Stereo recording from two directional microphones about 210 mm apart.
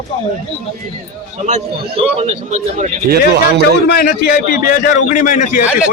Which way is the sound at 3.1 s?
50° right (ahead or behind).